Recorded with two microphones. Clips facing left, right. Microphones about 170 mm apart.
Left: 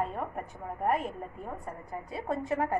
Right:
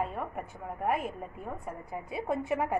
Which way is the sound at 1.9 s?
15° right (ahead or behind).